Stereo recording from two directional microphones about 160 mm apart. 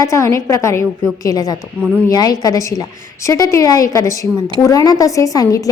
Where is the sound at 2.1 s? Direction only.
25° left (ahead or behind).